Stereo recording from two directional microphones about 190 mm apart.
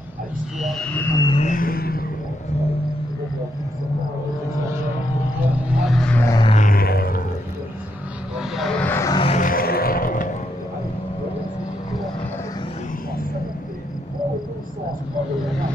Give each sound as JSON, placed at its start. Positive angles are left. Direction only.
{"t": 0.6, "sound": "a sound", "side_deg": 0}
{"t": 1.3, "sound": "vehicle", "side_deg": 40}
{"t": 5.4, "sound": "vehicle", "side_deg": -5}
{"t": 6.2, "sound": "music", "side_deg": 20}
{"t": 6.5, "sound": "music", "side_deg": 45}
{"t": 8.4, "sound": "vehicle", "side_deg": 0}
{"t": 9.2, "sound": "vehicle", "side_deg": 35}
{"t": 9.5, "sound": "vehicle", "side_deg": 50}